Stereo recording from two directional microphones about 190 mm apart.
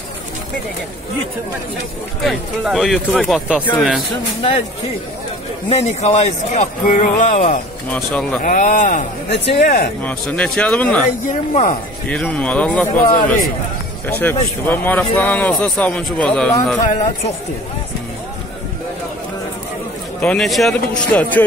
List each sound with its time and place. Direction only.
2.2 s speech: centre (ahead or behind)
4.4 s speech: 30° left (ahead or behind)
5.7 s a man's voice: 35° left (ahead or behind)
7.9 s speech: 5° left (ahead or behind)
8.4 s speech: 45° left (ahead or behind)
10.0 s speech: 5° left (ahead or behind)
11.1 s a man's voice: 40° left (ahead or behind)
12.1 s speech: 5° left (ahead or behind)
13.0 s speech: 50° left (ahead or behind)
14.0 s speech: 10° left (ahead or behind)
20.2 s speech: 5° left (ahead or behind)